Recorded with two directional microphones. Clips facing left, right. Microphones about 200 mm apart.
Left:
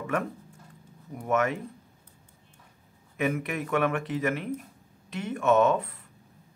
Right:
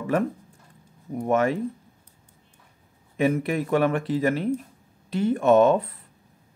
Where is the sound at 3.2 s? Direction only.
30° right (ahead or behind).